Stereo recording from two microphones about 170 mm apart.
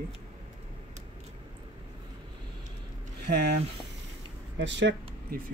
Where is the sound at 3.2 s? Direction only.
70° right (ahead or behind).